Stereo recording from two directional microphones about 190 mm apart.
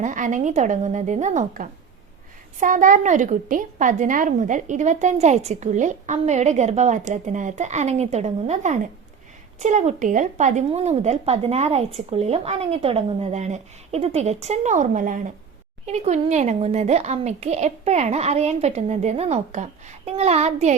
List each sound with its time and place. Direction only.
0.0 s a woman's voice: 40° right (ahead or behind)